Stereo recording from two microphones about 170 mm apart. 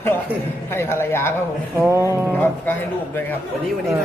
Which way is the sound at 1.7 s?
15° right (ahead or behind).